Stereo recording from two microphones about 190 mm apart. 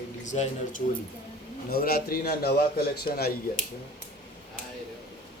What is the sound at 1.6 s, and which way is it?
A man's voice, 55° left (ahead or behind).